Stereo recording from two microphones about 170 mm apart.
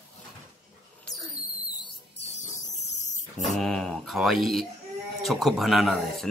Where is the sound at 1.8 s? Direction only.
40° left (ahead or behind).